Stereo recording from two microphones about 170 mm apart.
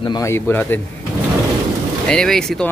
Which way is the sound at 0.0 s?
20° left (ahead or behind).